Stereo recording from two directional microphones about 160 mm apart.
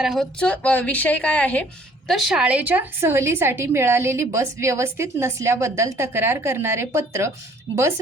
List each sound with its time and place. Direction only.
0.0 s a woman's voice: centre (ahead or behind); by 7.3 s 15° right (ahead or behind)